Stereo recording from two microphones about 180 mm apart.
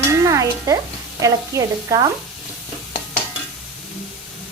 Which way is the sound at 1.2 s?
20° right (ahead or behind).